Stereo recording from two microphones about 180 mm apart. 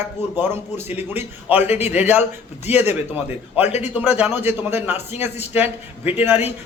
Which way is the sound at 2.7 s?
35° left (ahead or behind).